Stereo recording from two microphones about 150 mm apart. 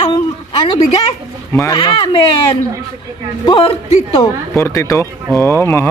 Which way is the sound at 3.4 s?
35° left (ahead or behind).